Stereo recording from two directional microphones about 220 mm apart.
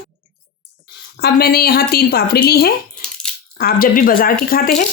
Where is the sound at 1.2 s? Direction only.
45° left (ahead or behind).